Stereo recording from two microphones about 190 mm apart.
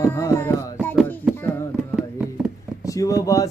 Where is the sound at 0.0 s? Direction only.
10° left (ahead or behind).